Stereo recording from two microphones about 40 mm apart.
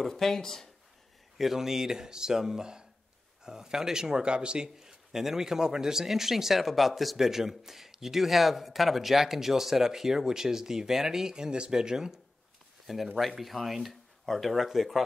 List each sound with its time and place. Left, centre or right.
0.0 s speech: centre
1.4 s a man's voice: centre; by 4.6 s right
4.7 s a man's voice: centre
12.8 s speech: centre